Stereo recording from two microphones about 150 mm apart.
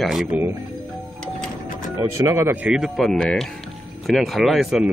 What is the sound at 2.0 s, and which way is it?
Speech, 20° right (ahead or behind).